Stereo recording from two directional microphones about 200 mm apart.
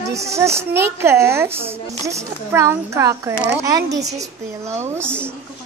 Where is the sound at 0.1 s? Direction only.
15° right (ahead or behind).